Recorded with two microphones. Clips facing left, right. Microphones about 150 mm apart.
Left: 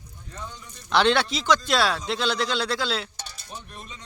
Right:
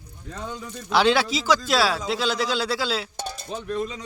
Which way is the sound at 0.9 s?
5° right (ahead or behind).